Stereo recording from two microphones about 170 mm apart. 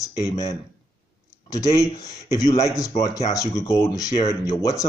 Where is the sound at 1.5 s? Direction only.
20° left (ahead or behind).